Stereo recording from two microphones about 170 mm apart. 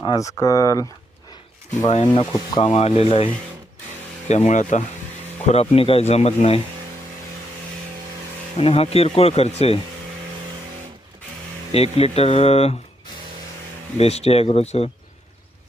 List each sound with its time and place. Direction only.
0.0 s speech: 20° left (ahead or behind)
1.9 s speech: 40° left (ahead or behind)
4.3 s speech: 40° left (ahead or behind)
8.5 s speech: 35° left (ahead or behind)
11.7 s speech: 35° left (ahead or behind)
14.0 s speech: 35° left (ahead or behind)